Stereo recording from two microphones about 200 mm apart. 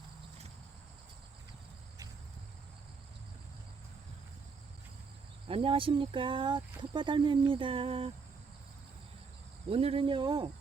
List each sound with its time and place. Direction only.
5.5 s speech: 25° right (ahead or behind)
9.6 s speech: 30° right (ahead or behind)